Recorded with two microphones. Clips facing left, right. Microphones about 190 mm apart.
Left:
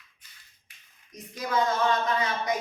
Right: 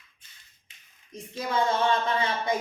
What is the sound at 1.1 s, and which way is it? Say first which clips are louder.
A woman's voice: even; 30° right (ahead or behind).